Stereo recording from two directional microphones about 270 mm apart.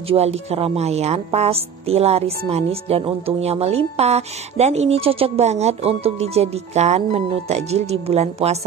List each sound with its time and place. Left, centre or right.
0.1 s a woman's voice: right